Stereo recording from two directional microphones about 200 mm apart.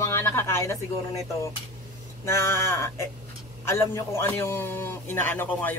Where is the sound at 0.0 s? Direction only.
10° left (ahead or behind).